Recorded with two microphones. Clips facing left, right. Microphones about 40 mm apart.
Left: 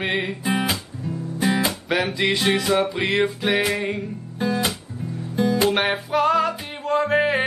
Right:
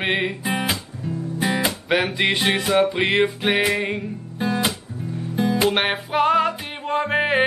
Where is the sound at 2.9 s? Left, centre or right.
Right.